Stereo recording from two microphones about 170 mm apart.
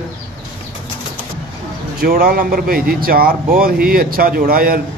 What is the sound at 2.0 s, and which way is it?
Speech, 60° right (ahead or behind).